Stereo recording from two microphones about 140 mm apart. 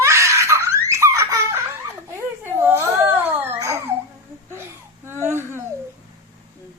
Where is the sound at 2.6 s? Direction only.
15° right (ahead or behind).